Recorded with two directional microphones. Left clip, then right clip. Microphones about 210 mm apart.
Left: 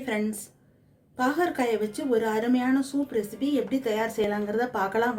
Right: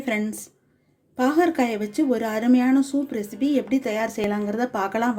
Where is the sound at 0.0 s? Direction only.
40° right (ahead or behind).